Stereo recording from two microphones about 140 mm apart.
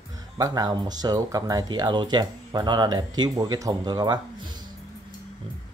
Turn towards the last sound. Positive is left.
turn(degrees=-30)  # may be behind; listen again after turning